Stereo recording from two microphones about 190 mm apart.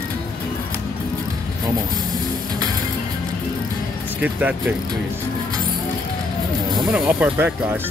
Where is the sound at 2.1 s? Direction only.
20° right (ahead or behind).